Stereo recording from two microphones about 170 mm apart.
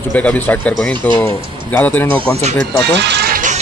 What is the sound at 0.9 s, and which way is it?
Speech, 25° right (ahead or behind).